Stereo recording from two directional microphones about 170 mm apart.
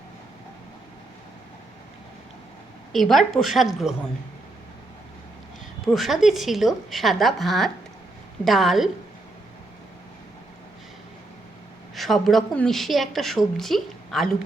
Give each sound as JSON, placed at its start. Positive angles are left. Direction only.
{"t": 2.9, "sound": "a woman's voice", "side_deg": 0}
{"t": 5.8, "sound": "a woman's voice", "side_deg": 0}
{"t": 11.9, "sound": "a woman's voice", "side_deg": 0}